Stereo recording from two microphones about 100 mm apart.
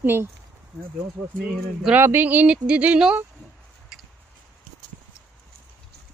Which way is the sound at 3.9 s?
5° right (ahead or behind).